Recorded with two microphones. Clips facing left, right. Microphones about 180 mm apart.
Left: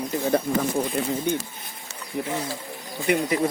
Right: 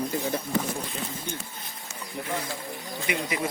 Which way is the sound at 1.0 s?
70° left (ahead or behind).